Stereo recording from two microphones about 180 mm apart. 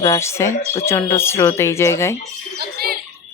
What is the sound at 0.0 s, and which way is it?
Speech, 15° left (ahead or behind).